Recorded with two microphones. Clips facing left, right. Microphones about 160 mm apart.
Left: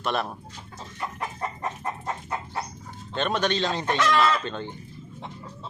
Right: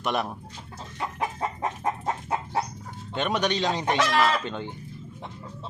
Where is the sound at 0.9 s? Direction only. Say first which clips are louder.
Right 3 dB; 90° right.